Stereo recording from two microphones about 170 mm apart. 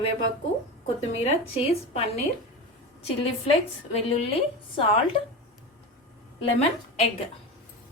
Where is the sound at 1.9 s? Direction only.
35° left (ahead or behind).